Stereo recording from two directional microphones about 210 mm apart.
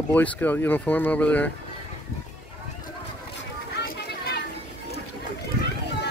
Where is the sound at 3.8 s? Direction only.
55° left (ahead or behind).